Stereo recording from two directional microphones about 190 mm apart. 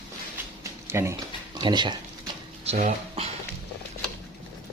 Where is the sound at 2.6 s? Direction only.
35° right (ahead or behind).